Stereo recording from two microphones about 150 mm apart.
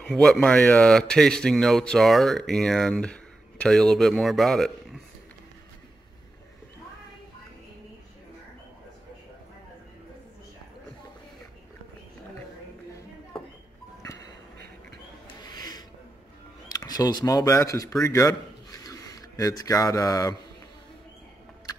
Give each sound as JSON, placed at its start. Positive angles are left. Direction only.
{"t": 0.0, "sound": "speech", "side_deg": 5}
{"t": 15.2, "sound": "a sound", "side_deg": 30}
{"t": 16.6, "sound": "speech", "side_deg": 25}